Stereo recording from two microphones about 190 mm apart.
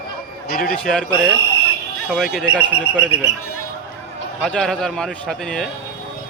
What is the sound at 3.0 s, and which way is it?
Speech, 5° right (ahead or behind).